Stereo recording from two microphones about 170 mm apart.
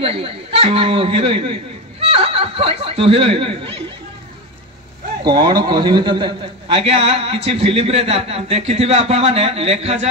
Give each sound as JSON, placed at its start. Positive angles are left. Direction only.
{"t": 0.0, "sound": "a man's voice", "side_deg": -35}
{"t": 5.2, "sound": "a man's voice", "side_deg": -25}